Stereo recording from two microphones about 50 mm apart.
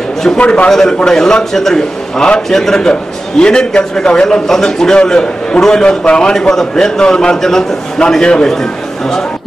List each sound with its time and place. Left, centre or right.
0.4 s a man's voice: left
0.7 s a man's voice: centre
2.2 s a man's voice: centre